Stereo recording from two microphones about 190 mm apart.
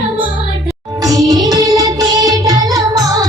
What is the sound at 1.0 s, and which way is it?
Music, 20° right (ahead or behind).